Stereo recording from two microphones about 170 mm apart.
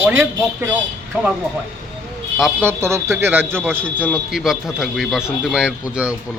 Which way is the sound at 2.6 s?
15° right (ahead or behind).